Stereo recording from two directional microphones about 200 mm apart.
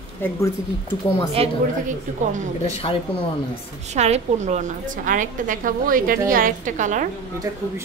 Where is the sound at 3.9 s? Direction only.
35° right (ahead or behind).